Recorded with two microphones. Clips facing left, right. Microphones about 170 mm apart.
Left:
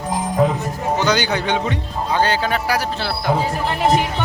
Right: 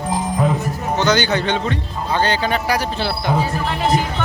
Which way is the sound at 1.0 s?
10° left (ahead or behind).